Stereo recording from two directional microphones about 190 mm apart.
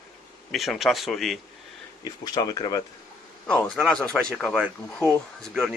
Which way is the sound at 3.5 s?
5° left (ahead or behind).